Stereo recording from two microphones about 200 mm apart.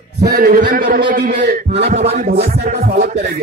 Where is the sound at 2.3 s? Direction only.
50° right (ahead or behind).